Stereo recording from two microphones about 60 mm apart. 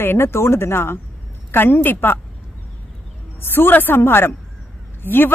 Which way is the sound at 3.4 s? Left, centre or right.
Left.